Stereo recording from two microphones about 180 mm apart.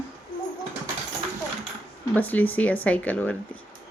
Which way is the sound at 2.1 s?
10° left (ahead or behind).